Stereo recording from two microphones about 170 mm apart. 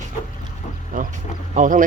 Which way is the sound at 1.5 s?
50° right (ahead or behind).